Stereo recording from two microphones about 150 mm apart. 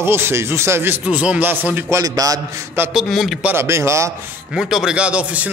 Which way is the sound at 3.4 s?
15° right (ahead or behind).